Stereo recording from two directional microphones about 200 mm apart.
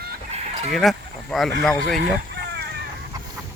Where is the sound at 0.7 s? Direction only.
Centre (ahead or behind).